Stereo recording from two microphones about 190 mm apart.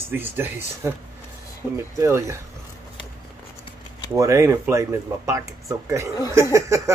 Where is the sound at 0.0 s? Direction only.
10° right (ahead or behind).